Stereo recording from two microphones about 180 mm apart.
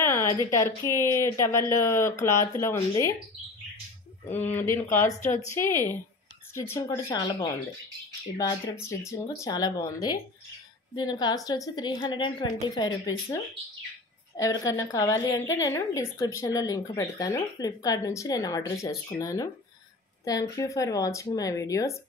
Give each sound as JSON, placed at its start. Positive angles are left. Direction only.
{"t": 0.0, "sound": "a woman's voice", "side_deg": 15}
{"t": 4.3, "sound": "a woman's voice", "side_deg": 10}